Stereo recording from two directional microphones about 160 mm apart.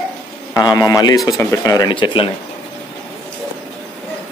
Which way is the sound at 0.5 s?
20° left (ahead or behind).